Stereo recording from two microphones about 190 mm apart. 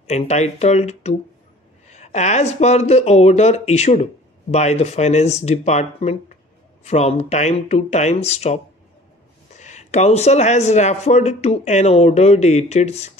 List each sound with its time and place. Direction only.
0.0 s speech: 35° left (ahead or behind)
9.6 s speech: 40° left (ahead or behind)